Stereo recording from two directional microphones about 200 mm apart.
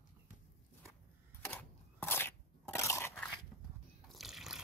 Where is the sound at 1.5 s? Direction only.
10° left (ahead or behind).